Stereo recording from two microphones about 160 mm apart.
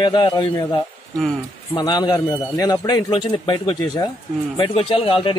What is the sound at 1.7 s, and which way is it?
A man's voice, 25° left (ahead or behind).